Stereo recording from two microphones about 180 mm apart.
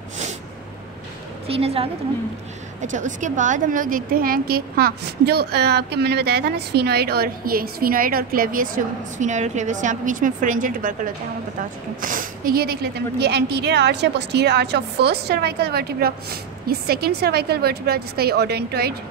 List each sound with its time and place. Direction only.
1.5 s a woman's voice: 35° right (ahead or behind)
2.8 s a woman's voice: 45° right (ahead or behind)
12.0 s a woman's voice: 50° right (ahead or behind)